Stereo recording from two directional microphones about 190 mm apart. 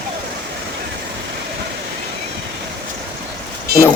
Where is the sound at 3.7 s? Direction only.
55° right (ahead or behind).